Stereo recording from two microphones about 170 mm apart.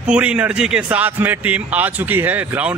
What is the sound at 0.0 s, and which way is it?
Speech, 5° right (ahead or behind).